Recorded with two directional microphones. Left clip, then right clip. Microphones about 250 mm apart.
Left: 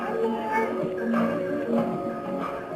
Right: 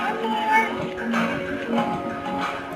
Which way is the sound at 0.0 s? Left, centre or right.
Centre.